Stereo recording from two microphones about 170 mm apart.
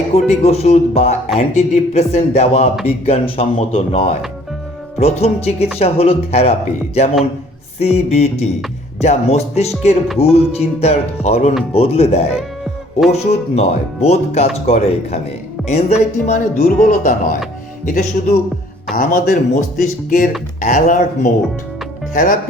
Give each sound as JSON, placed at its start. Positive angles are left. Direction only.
{"t": 0.1, "sound": "speech", "side_deg": 40}
{"t": 16.6, "sound": "speech", "side_deg": 55}
{"t": 22.1, "sound": "speech", "side_deg": 50}